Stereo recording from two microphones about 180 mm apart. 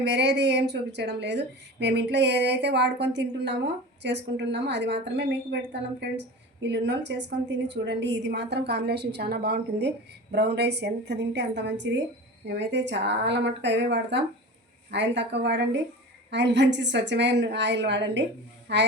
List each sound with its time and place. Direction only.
0.0 s a woman's voice: 70° right (ahead or behind)
6.6 s a woman's voice: 75° right (ahead or behind)